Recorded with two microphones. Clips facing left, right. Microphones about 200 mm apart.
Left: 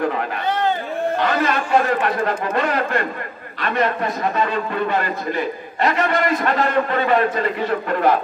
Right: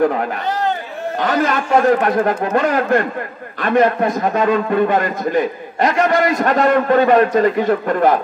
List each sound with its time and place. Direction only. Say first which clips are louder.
1.2 s a man's voice: right 6 dB; 45° right (ahead or behind)